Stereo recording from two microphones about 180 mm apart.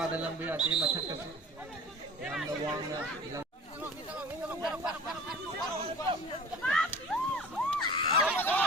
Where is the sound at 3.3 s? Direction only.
10° right (ahead or behind).